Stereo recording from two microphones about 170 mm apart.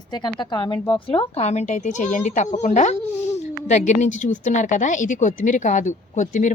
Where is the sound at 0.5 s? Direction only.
30° left (ahead or behind).